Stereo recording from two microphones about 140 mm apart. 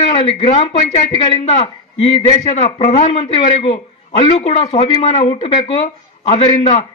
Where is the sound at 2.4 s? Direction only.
55° left (ahead or behind).